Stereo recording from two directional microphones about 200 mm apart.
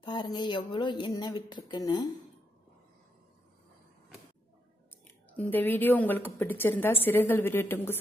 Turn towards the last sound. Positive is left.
turn(degrees=10)  # may be behind; listen again after turning